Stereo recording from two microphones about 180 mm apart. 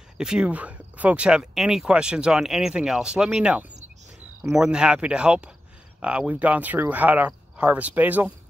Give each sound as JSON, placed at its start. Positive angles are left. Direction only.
{"t": 0.2, "sound": "speech", "side_deg": -5}